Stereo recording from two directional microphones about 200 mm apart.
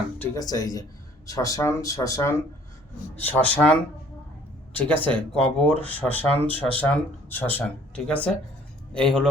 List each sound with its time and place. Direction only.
0.2 s a man's voice: 20° left (ahead or behind)